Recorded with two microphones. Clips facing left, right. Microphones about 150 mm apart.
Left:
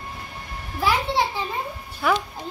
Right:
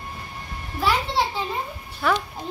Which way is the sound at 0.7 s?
15° left (ahead or behind).